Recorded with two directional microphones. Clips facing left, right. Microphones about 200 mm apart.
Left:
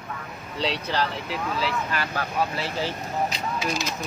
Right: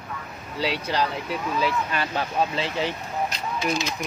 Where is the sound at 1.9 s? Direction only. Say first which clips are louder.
Right 2 dB; 25° right (ahead or behind).